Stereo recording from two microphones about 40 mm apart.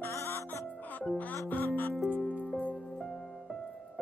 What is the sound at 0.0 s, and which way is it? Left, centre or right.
Music, left.